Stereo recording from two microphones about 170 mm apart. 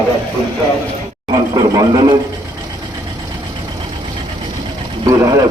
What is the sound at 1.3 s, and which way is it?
Speech, 20° right (ahead or behind).